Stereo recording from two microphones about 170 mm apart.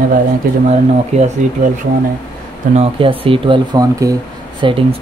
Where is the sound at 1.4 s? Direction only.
45° right (ahead or behind).